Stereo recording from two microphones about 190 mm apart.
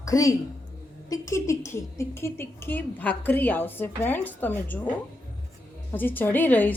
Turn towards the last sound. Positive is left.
turn(degrees=10)  # may be behind; listen again after turning